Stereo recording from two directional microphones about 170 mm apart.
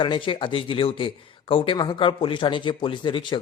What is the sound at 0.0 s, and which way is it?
A man's voice, 30° left (ahead or behind).